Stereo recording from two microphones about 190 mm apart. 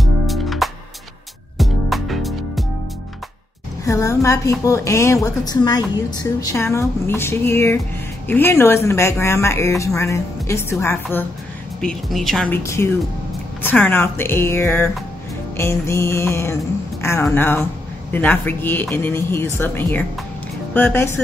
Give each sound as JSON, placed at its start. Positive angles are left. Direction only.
{"t": 0.0, "sound": "music", "side_deg": 0}
{"t": 3.8, "sound": "a woman's voice", "side_deg": 15}
{"t": 11.8, "sound": "speech", "side_deg": 0}
{"t": 12.6, "sound": "a woman's voice", "side_deg": 15}